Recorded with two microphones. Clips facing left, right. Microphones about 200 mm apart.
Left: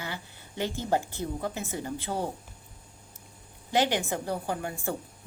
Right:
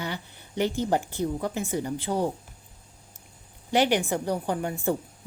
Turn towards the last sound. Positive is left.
turn(degrees=-20)  # may be behind; listen again after turning